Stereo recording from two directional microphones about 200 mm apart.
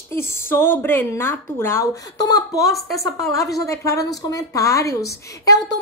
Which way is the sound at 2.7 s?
Centre (ahead or behind).